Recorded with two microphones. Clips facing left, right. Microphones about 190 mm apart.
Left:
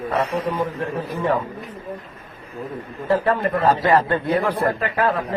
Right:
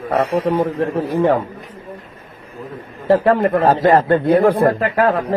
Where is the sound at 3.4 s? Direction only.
45° right (ahead or behind).